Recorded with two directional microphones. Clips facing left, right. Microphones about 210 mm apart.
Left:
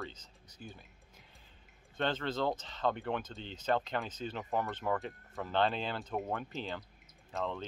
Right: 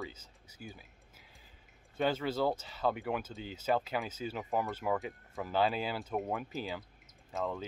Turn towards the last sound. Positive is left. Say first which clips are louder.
# right 1 dB
turn(degrees=-5)  # may be behind; listen again after turning